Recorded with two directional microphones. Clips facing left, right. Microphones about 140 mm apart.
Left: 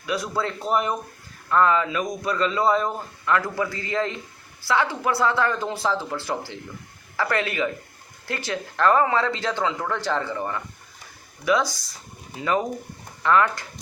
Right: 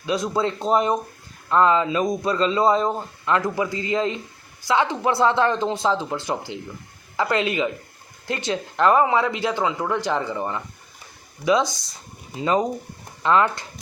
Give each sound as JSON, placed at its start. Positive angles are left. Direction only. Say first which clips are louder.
{"t": 0.0, "sound": "speech", "louder": "right 4 dB", "side_deg": -20}